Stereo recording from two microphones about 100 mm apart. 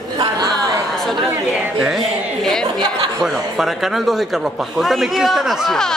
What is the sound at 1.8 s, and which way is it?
Speech, 5° right (ahead or behind).